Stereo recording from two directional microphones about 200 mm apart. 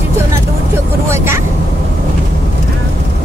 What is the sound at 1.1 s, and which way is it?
Vehicle, 15° right (ahead or behind).